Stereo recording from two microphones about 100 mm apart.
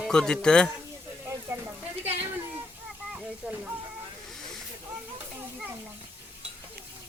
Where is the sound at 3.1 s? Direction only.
10° right (ahead or behind).